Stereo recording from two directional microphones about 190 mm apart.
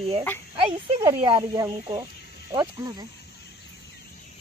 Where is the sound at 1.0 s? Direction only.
20° right (ahead or behind).